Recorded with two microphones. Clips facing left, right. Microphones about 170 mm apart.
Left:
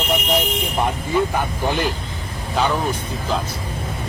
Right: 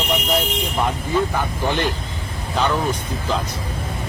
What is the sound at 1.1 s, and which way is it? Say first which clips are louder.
Speech: left 1 dB; 15° left (ahead or behind).